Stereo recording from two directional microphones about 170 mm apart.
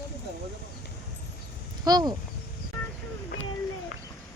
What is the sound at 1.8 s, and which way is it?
Speech, 25° right (ahead or behind).